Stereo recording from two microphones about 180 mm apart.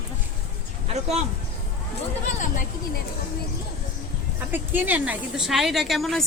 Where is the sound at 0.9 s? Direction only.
35° right (ahead or behind).